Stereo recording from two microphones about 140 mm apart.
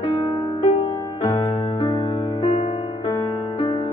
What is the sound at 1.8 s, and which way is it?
Music, 35° left (ahead or behind).